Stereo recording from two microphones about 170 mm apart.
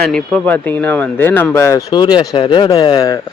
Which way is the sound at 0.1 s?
10° left (ahead or behind).